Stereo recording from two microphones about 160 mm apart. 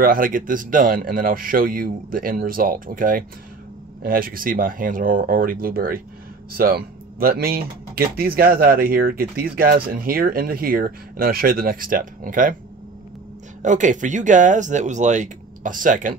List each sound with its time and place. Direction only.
0.0 s speech: 60° right (ahead or behind)
13.6 s speech: 50° right (ahead or behind)